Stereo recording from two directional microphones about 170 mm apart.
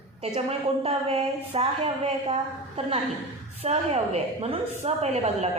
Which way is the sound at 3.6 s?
40° right (ahead or behind).